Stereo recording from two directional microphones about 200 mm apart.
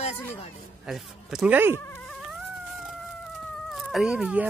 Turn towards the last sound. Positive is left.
turn(degrees=-5)  # may be behind; listen again after turning